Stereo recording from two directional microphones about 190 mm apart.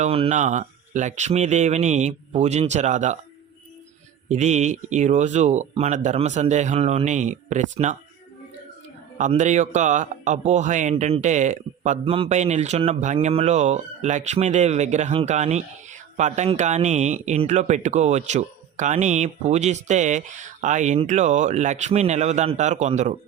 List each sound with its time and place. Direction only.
0.0 s speech: 35° right (ahead or behind)
4.3 s speech: 40° right (ahead or behind)
9.1 s speech: 40° right (ahead or behind)